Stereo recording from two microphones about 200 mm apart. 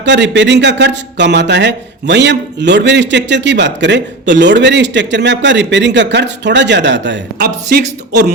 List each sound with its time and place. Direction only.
0.0 s speech: 60° right (ahead or behind)